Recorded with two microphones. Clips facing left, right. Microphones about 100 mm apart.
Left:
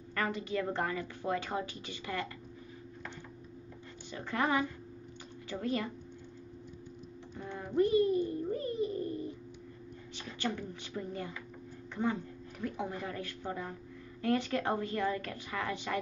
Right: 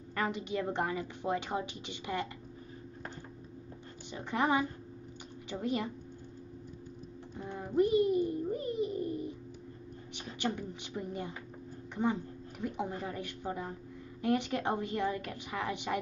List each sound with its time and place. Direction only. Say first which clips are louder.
0.1 s a woman's voice: even; 20° right (ahead or behind)
4.1 s a woman's voice: right 1 dB; 20° right (ahead or behind)
7.5 s a sound: even; 15° right (ahead or behind)
10.1 s a woman's voice: right 1 dB; 20° right (ahead or behind)